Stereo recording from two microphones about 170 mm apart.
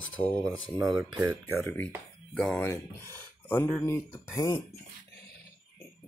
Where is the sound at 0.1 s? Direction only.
5° left (ahead or behind).